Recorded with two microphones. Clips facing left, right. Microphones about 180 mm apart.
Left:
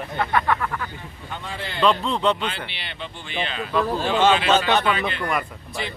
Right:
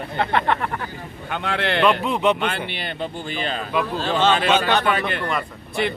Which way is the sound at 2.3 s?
50° right (ahead or behind).